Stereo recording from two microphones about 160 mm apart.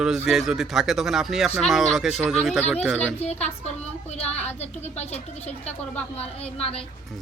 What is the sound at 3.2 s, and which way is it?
Speech, 45° left (ahead or behind).